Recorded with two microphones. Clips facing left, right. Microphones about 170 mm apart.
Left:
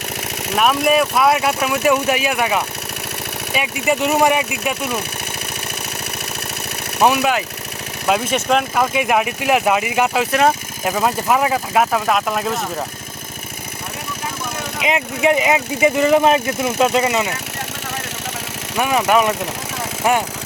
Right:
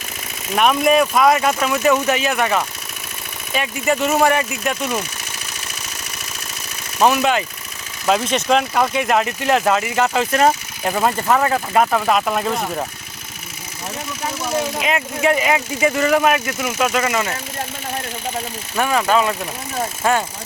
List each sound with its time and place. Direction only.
0.5 s speech: 5° left (ahead or behind)
3.8 s speech: 15° left (ahead or behind)
7.0 s speech: 10° left (ahead or behind)
10.3 s speech: centre (ahead or behind)
14.8 s speech: 20° left (ahead or behind)
18.8 s speech: 15° left (ahead or behind)